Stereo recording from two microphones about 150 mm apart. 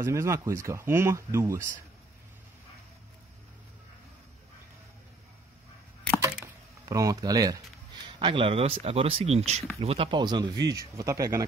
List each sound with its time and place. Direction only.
0.0 s speech: 20° right (ahead or behind)
6.9 s speech: 25° right (ahead or behind)